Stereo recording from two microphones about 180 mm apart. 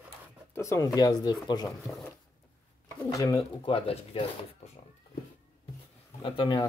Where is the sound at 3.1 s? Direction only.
20° left (ahead or behind).